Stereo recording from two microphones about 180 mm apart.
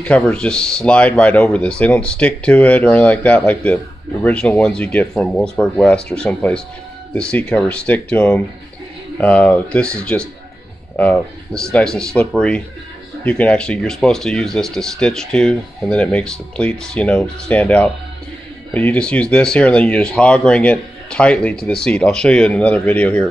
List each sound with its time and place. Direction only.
0.0 s speech: 5° left (ahead or behind)